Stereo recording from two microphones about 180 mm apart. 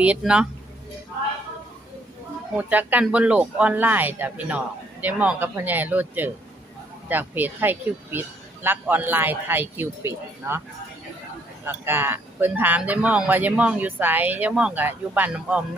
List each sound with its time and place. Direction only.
0.0 s speech: 5° right (ahead or behind)
2.5 s speech: 10° right (ahead or behind)
11.6 s speech: 10° right (ahead or behind)